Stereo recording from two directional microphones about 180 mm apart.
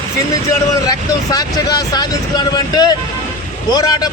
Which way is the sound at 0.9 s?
20° left (ahead or behind).